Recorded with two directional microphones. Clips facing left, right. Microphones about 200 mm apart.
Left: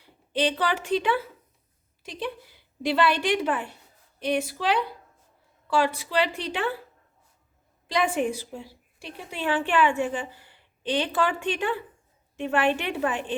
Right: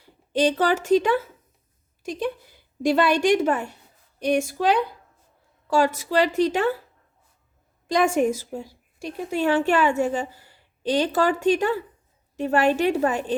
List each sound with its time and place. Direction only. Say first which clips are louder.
0.0 s a woman's voice: right 5 dB; 45° right (ahead or behind)
7.9 s a woman's voice: right 5 dB; 45° right (ahead or behind)